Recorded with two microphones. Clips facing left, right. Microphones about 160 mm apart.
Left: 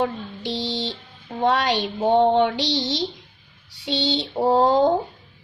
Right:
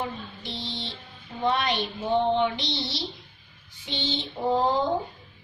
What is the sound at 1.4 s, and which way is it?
Speech, 90° left.